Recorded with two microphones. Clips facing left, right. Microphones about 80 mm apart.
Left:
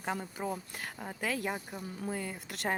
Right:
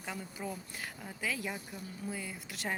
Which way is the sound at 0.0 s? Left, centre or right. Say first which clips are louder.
Left 5 dB; left.